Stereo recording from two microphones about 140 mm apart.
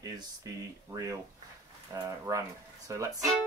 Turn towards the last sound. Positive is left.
turn(degrees=-20)  # may be behind; listen again after turning